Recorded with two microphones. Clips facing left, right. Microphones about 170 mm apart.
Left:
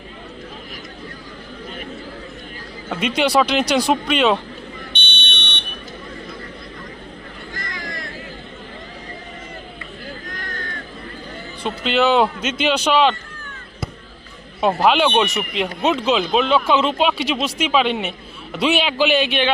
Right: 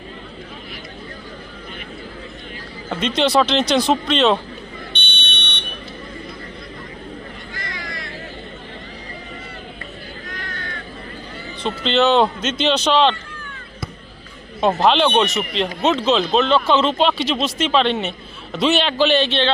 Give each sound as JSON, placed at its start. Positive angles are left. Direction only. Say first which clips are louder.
{"t": 2.9, "sound": "speech", "louder": "even", "side_deg": 10}
{"t": 4.9, "sound": "a sound", "louder": "even", "side_deg": 55}
{"t": 7.5, "sound": "vehicle", "louder": "left 2 dB", "side_deg": 45}
{"t": 10.2, "sound": "a sound", "louder": "left 1 dB", "side_deg": 45}
{"t": 11.6, "sound": "speech", "louder": "right 1 dB", "side_deg": 10}
{"t": 14.6, "sound": "speech", "louder": "even", "side_deg": 10}